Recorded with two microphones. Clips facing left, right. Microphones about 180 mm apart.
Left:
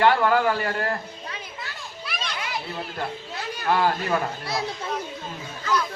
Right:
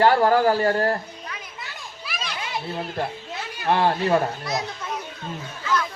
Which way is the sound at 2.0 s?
Centre (ahead or behind).